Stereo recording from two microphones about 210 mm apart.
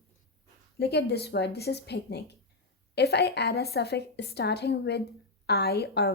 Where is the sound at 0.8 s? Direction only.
50° left (ahead or behind).